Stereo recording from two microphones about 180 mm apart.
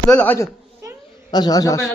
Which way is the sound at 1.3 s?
20° left (ahead or behind).